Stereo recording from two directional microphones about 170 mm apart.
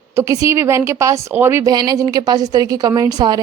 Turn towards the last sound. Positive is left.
turn(degrees=-20)  # may be behind; listen again after turning